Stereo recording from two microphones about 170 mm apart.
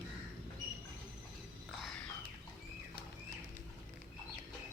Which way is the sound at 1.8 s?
5° left (ahead or behind).